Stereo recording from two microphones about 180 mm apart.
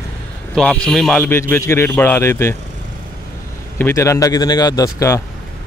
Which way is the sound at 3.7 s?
15° left (ahead or behind).